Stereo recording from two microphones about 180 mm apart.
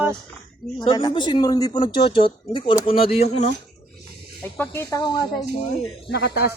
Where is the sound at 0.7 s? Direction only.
25° left (ahead or behind).